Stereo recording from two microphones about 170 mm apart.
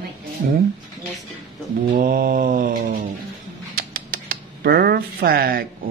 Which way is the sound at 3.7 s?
55° right (ahead or behind).